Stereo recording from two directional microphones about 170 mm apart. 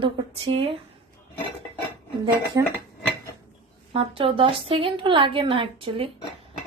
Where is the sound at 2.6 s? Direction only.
20° right (ahead or behind).